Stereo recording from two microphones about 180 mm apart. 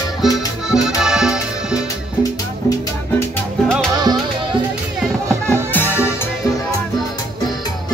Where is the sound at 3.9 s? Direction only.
20° right (ahead or behind).